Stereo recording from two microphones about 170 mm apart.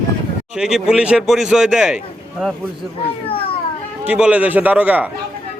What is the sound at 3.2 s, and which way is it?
Children playing, 35° left (ahead or behind).